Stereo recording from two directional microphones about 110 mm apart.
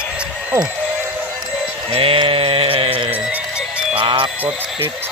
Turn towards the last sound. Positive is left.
turn(degrees=-55)  # may be behind; listen again after turning